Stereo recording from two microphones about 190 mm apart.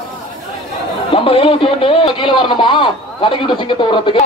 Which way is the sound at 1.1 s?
30° left (ahead or behind).